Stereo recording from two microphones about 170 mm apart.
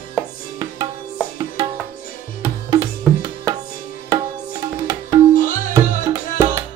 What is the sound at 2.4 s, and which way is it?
Music, 20° right (ahead or behind).